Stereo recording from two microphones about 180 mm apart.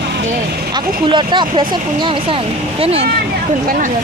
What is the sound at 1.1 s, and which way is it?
Speech, 25° right (ahead or behind).